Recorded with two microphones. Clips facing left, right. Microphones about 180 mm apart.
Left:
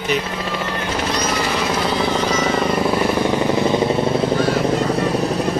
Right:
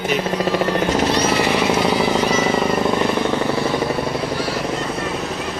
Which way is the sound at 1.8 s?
10° right (ahead or behind).